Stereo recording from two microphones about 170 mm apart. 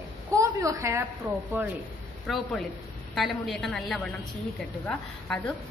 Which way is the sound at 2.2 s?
Centre (ahead or behind).